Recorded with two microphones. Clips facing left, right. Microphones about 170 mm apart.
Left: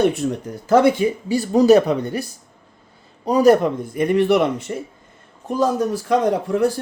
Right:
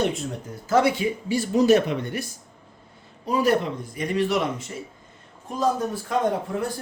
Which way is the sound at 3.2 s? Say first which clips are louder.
Left 8 dB; 40° left (ahead or behind).